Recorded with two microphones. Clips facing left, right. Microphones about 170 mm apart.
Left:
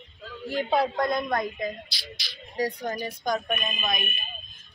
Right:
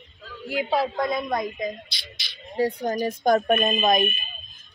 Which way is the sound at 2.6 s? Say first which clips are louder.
Right 5 dB; 30° right (ahead or behind).